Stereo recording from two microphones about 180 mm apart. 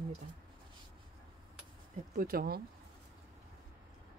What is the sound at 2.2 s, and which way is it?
Speech, 55° right (ahead or behind).